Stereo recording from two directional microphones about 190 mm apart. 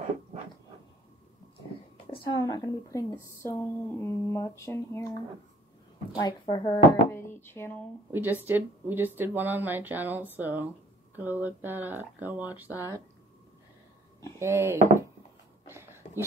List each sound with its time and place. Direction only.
2.1 s a woman's voice: 25° left (ahead or behind)
6.1 s a woman's voice: 20° left (ahead or behind)
8.1 s speech: 10° right (ahead or behind)
14.4 s speech: 15° right (ahead or behind)
16.0 s a sound: 35° left (ahead or behind)